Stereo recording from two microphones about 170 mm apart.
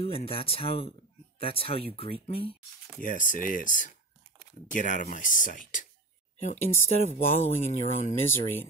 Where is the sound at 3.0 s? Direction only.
50° left (ahead or behind).